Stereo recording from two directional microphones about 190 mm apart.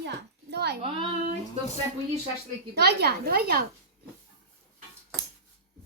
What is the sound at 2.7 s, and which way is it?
Speech, 60° right (ahead or behind).